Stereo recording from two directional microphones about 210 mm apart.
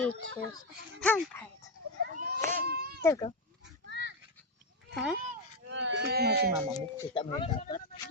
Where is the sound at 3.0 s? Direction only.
15° left (ahead or behind).